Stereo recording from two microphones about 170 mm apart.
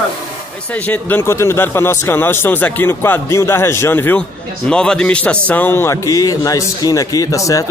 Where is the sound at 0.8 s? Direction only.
10° left (ahead or behind).